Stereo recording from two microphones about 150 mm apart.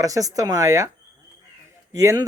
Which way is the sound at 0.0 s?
25° right (ahead or behind).